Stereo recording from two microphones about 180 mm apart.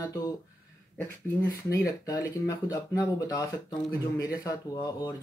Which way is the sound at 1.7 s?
20° left (ahead or behind).